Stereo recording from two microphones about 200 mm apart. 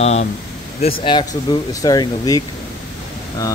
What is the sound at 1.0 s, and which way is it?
Speech, 20° left (ahead or behind).